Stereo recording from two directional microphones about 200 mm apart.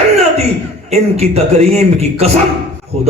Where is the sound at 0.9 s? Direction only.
30° right (ahead or behind).